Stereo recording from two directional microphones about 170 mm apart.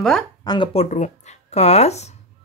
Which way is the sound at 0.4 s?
25° left (ahead or behind).